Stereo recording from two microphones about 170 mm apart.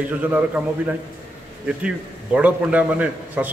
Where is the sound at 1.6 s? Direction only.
5° right (ahead or behind).